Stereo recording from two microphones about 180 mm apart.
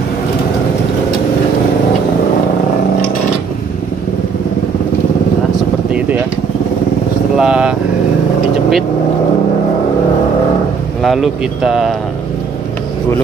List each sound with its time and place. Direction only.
7.3 s vehicle: 5° right (ahead or behind)
11.0 s speech: centre (ahead or behind)